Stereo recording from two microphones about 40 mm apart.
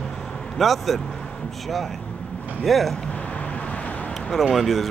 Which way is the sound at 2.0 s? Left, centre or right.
Left.